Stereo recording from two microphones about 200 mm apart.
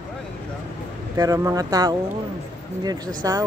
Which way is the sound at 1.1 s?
15° right (ahead or behind).